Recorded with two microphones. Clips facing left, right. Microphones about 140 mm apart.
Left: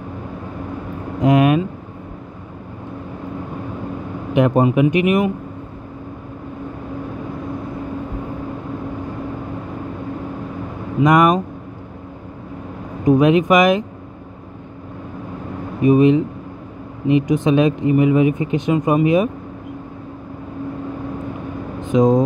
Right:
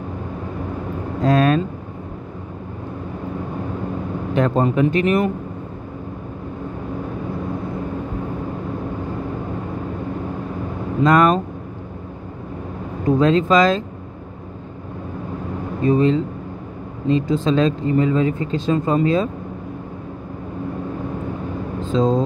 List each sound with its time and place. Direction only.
1.2 s speech: 20° left (ahead or behind)
4.3 s speech: 15° left (ahead or behind)
11.0 s speech: 15° left (ahead or behind)
13.0 s speech: 15° left (ahead or behind)
15.8 s speech: 15° left (ahead or behind)
21.8 s speech: 15° left (ahead or behind)